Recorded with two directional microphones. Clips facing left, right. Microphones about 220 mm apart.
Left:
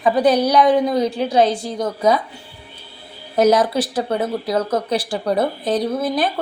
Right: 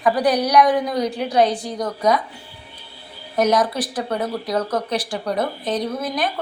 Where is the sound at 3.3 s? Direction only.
30° left (ahead or behind).